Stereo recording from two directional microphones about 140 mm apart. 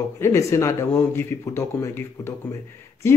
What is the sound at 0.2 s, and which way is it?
Speech, 20° left (ahead or behind).